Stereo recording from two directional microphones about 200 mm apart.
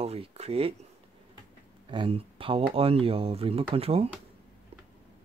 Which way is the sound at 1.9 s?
25° right (ahead or behind).